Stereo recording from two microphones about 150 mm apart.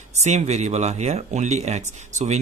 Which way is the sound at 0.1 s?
45° right (ahead or behind).